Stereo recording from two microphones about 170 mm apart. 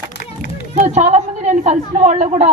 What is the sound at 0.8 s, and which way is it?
A woman's voice, 40° right (ahead or behind).